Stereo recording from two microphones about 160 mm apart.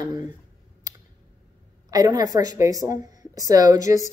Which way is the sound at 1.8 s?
25° right (ahead or behind).